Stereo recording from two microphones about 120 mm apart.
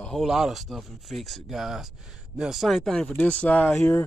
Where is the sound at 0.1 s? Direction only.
Centre (ahead or behind).